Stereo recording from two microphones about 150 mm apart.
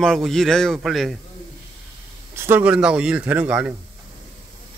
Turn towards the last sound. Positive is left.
turn(degrees=-10)  # may be behind; listen again after turning